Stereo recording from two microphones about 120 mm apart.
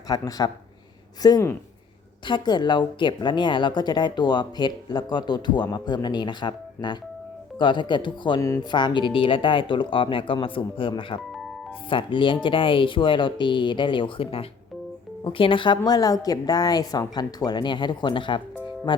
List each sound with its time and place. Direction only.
0.1 s speech: 30° left (ahead or behind)
8.4 s speech: 25° left (ahead or behind)
8.7 s speech: 40° left (ahead or behind)